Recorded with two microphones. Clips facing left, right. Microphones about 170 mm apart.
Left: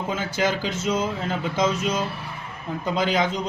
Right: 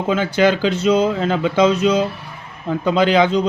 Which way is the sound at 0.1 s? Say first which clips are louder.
Right 10 dB; 70° right (ahead or behind).